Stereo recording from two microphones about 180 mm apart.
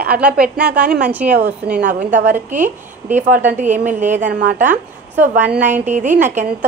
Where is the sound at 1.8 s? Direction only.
45° right (ahead or behind).